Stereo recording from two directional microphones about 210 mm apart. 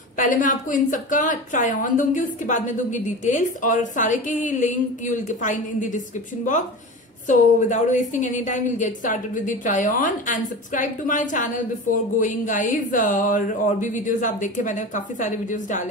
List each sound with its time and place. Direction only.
0.2 s a woman's voice: 40° left (ahead or behind)
7.2 s a woman's voice: 35° left (ahead or behind)